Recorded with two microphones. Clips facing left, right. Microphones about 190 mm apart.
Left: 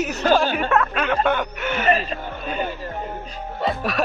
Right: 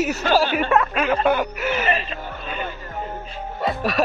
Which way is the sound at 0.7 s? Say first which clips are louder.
Right 1 dB; 5° right (ahead or behind).